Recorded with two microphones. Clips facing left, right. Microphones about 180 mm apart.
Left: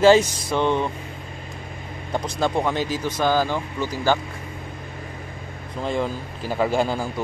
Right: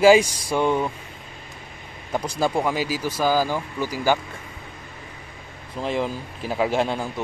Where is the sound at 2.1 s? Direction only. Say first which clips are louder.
Even; 5° right (ahead or behind).